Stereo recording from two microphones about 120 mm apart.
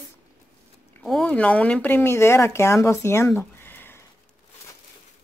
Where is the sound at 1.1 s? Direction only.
5° left (ahead or behind).